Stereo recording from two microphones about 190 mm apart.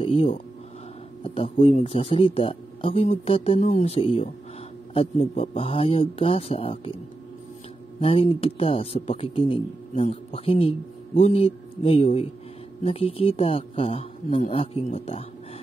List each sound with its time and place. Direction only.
0.0 s speech: 30° left (ahead or behind)
8.0 s a man's voice: 30° left (ahead or behind)